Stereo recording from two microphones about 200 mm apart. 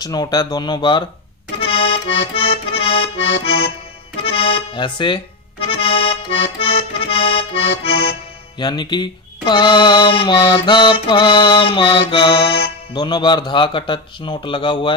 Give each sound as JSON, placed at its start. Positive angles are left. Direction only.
{"t": 0.0, "sound": "speech", "side_deg": 20}
{"t": 1.6, "sound": "accordion", "side_deg": 30}
{"t": 4.2, "sound": "speech", "side_deg": 30}